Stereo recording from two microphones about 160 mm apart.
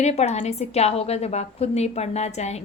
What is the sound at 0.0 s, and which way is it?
A woman's voice, 45° left (ahead or behind).